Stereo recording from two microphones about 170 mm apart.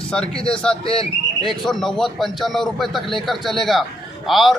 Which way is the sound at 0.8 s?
35° left (ahead or behind).